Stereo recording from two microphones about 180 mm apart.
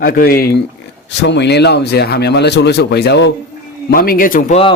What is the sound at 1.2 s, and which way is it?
Speech, 75° left (ahead or behind).